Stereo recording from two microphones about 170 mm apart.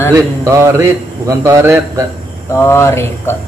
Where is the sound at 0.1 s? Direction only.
15° right (ahead or behind).